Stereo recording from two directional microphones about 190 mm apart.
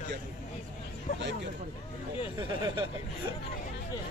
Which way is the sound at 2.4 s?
25° right (ahead or behind).